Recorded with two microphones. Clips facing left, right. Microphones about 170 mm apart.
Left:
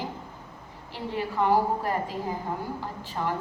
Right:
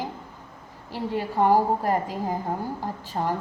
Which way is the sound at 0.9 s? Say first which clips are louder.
Right 3 dB; 40° right (ahead or behind).